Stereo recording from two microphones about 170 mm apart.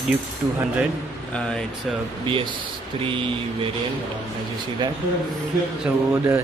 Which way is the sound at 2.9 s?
30° right (ahead or behind).